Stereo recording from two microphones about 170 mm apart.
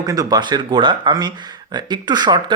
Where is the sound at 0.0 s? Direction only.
20° right (ahead or behind).